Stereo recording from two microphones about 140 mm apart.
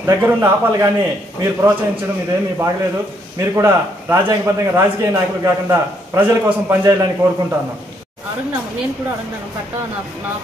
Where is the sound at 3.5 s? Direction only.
20° right (ahead or behind).